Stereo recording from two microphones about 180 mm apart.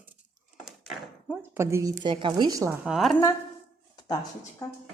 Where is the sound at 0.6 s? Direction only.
5° right (ahead or behind); by 2.7 s 20° right (ahead or behind).